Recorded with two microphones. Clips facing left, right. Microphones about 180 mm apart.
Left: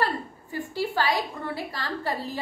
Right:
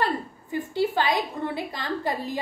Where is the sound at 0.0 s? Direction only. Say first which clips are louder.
Right 1 dB; 20° right (ahead or behind).